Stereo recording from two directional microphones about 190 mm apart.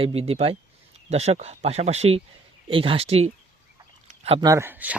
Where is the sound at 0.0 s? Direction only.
30° right (ahead or behind).